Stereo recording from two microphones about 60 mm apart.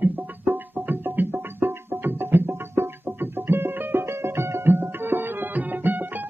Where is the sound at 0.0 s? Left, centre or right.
Right.